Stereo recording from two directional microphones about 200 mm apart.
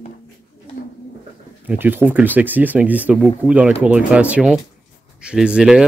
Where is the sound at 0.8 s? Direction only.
50° left (ahead or behind).